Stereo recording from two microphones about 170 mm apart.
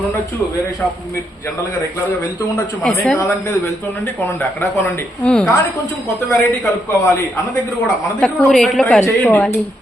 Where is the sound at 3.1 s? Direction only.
20° left (ahead or behind).